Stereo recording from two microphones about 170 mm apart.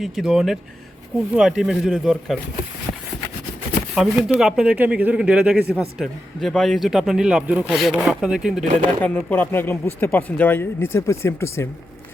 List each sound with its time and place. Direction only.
0.0 s a man's voice: centre (ahead or behind)
3.9 s a man's voice: 5° right (ahead or behind)
8.6 s speech: 40° right (ahead or behind)
9.0 s speech: 10° left (ahead or behind)